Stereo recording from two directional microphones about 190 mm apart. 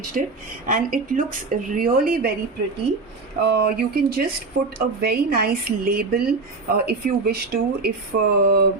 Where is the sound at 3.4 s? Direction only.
55° right (ahead or behind).